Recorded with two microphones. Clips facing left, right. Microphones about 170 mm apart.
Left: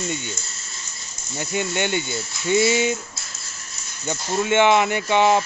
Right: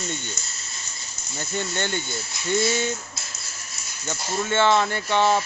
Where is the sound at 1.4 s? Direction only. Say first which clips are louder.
Left 4 dB; 15° left (ahead or behind).